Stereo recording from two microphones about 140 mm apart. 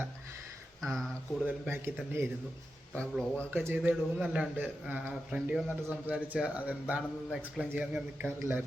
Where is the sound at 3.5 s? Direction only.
15° right (ahead or behind).